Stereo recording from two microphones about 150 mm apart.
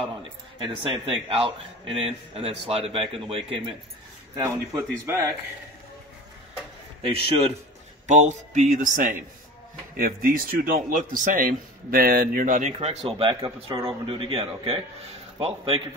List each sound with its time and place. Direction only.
0.2 s a man's voice: 40° right (ahead or behind)
4.4 s speech: 20° right (ahead or behind)
8.1 s speech: 50° right (ahead or behind)
9.9 s a man's voice: 70° right (ahead or behind)
12.7 s a man's voice: 40° right (ahead or behind)